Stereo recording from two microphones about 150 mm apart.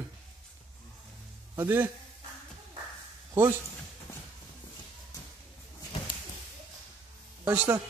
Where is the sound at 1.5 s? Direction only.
15° right (ahead or behind).